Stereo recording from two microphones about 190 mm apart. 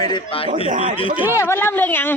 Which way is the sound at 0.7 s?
45° right (ahead or behind).